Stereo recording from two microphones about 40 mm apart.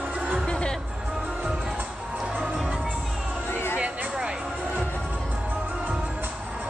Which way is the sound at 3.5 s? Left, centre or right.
Left.